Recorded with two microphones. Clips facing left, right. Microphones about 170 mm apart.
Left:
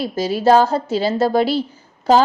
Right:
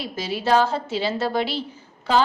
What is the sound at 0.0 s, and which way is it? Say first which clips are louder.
A woman's voice: left 9 dB; 40° left (ahead or behind).